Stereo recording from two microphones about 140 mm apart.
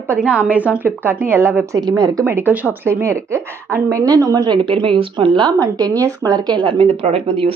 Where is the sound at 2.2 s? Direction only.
15° right (ahead or behind).